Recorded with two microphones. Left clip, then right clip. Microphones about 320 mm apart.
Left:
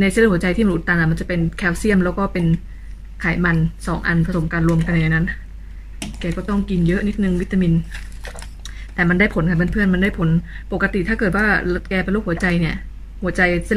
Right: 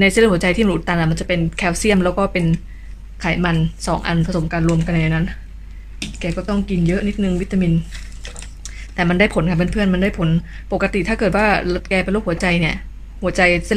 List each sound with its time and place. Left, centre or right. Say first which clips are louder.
0.0 s speech: right 3 dB; centre
8.6 s speech: left 1 dB; centre